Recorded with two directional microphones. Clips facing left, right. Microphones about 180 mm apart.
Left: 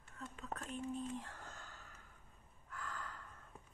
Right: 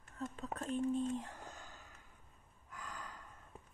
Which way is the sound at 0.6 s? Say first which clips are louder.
Right 9 dB; 30° right (ahead or behind).